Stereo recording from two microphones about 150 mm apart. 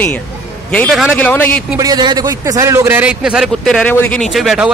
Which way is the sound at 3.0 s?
5° right (ahead or behind).